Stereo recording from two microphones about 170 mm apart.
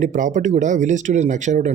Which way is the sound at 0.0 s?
50° right (ahead or behind).